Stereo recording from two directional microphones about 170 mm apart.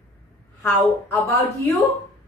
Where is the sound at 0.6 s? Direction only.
10° left (ahead or behind).